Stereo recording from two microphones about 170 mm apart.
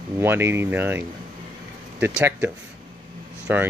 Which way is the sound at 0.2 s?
15° right (ahead or behind).